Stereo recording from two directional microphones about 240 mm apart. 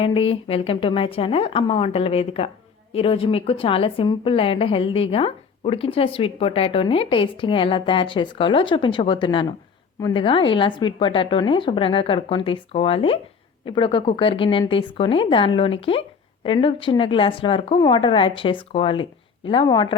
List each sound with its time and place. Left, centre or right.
0.0 s a woman's voice: left